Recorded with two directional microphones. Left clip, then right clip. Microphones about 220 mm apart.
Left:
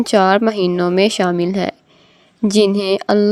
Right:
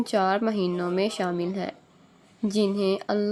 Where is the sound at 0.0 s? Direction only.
35° left (ahead or behind).